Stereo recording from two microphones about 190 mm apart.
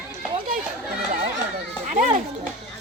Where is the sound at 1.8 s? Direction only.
40° right (ahead or behind).